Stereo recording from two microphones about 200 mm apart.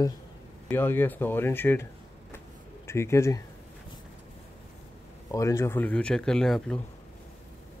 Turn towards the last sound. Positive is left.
turn(degrees=5)  # may be behind; listen again after turning